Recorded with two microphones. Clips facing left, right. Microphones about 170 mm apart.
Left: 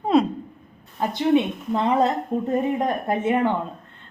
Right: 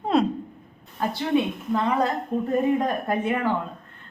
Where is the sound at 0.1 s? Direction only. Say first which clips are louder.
Left 3 dB; centre (ahead or behind).